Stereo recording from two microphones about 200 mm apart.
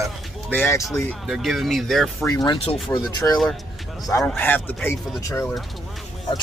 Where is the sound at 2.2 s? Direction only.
20° left (ahead or behind).